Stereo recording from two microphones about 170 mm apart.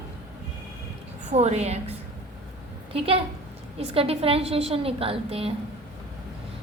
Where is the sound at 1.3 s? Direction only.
40° right (ahead or behind).